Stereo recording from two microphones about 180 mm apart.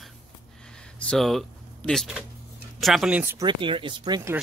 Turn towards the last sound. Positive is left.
turn(degrees=-25)  # may be behind; listen again after turning